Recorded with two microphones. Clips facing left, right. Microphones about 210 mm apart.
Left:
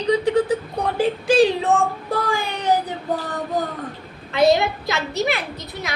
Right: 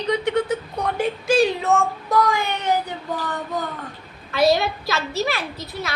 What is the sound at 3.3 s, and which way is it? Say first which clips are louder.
Female singing: left 3 dB; 35° left (ahead or behind).